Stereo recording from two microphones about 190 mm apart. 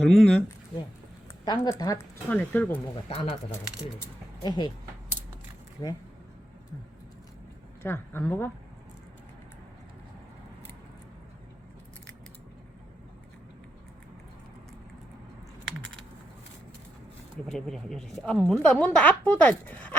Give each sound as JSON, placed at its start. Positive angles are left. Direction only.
{"t": 0.0, "sound": "a woman's voice", "side_deg": 0}
{"t": 1.5, "sound": "speech", "side_deg": 20}
{"t": 2.9, "sound": "speech", "side_deg": 30}
{"t": 4.4, "sound": "speech", "side_deg": 25}
{"t": 5.8, "sound": "speech", "side_deg": 15}
{"t": 7.8, "sound": "speech", "side_deg": 10}
{"t": 17.5, "sound": "a woman's voice", "side_deg": 0}